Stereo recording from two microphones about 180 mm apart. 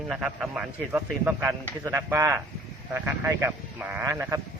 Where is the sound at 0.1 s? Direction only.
5° right (ahead or behind).